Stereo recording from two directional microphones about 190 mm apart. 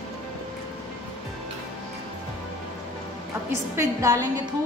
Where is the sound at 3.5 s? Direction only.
15° right (ahead or behind).